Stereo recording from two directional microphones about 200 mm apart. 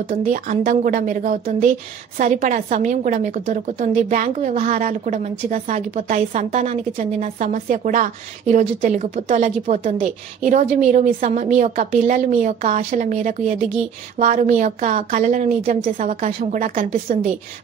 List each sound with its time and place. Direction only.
0.1 s a woman's voice: 40° right (ahead or behind)